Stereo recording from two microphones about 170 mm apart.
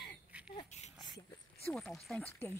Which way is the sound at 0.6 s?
40° left (ahead or behind).